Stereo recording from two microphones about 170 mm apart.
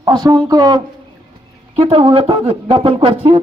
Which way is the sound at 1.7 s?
35° right (ahead or behind).